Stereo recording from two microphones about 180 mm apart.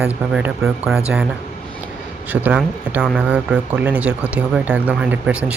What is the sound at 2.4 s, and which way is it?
Speech, 10° right (ahead or behind).